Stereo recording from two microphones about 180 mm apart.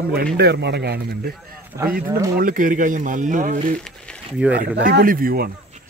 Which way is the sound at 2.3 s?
50° right (ahead or behind).